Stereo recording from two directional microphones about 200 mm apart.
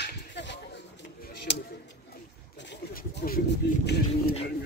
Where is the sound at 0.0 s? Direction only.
60° left (ahead or behind).